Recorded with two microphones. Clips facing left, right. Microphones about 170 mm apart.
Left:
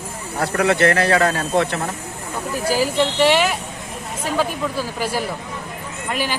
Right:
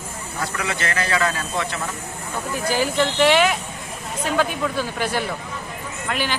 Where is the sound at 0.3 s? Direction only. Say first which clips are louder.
Left 10 dB; 60° left (ahead or behind).